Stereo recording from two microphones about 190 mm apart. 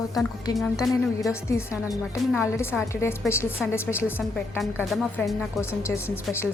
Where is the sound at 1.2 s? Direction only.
15° left (ahead or behind).